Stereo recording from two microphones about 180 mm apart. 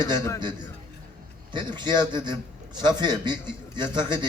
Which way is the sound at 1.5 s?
25° right (ahead or behind).